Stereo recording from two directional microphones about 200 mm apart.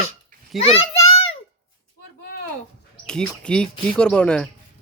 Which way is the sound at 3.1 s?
5° left (ahead or behind).